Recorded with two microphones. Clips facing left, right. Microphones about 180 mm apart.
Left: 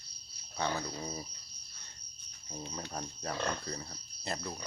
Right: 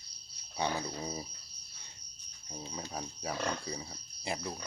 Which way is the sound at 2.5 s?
5° right (ahead or behind).